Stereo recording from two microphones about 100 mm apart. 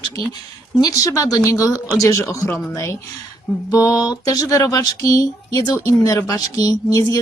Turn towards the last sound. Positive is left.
turn(degrees=35)  # may be behind; listen again after turning